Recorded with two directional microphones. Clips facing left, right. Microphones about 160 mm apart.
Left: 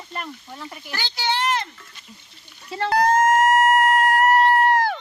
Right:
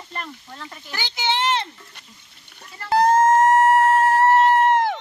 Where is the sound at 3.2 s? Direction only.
30° right (ahead or behind).